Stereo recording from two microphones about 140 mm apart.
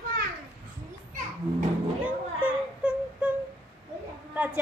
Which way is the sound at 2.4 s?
10° right (ahead or behind).